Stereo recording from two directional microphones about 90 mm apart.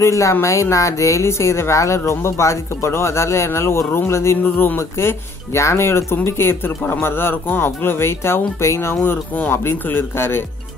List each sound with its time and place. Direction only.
0.0 s speech: 35° left (ahead or behind)